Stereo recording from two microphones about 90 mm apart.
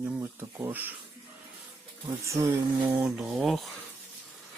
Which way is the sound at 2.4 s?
35° right (ahead or behind).